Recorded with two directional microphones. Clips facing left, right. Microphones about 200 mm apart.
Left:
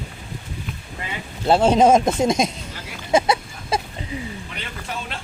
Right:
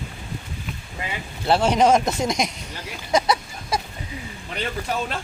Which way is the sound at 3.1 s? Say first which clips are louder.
Left 2 dB; 25° left (ahead or behind).